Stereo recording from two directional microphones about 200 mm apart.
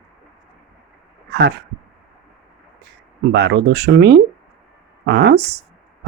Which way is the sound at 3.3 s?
60° right (ahead or behind).